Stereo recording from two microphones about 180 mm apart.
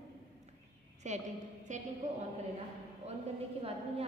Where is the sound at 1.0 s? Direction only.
40° right (ahead or behind).